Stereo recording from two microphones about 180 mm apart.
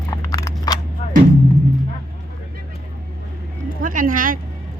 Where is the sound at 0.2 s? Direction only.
20° left (ahead or behind).